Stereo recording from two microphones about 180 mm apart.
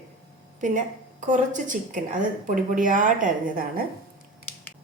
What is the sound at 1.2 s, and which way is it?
A woman's voice, 45° right (ahead or behind).